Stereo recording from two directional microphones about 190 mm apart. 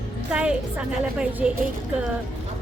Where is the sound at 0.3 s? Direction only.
5° right (ahead or behind).